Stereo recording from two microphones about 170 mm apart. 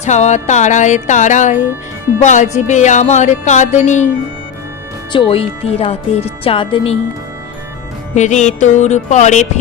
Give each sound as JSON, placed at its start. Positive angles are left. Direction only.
{"t": 0.0, "sound": "music", "side_deg": 40}
{"t": 5.1, "sound": "speech", "side_deg": 30}
{"t": 8.1, "sound": "music", "side_deg": 45}